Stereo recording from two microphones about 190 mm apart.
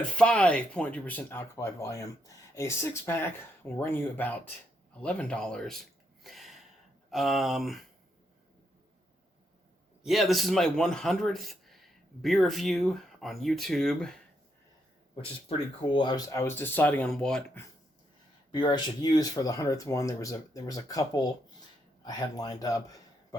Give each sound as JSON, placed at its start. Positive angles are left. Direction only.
{"t": 0.2, "sound": "speech", "side_deg": 5}
{"t": 4.9, "sound": "a sound", "side_deg": 5}
{"t": 7.1, "sound": "speech", "side_deg": 0}
{"t": 10.0, "sound": "speech", "side_deg": 0}
{"t": 15.1, "sound": "speech", "side_deg": 30}
{"t": 18.5, "sound": "a man's voice", "side_deg": 20}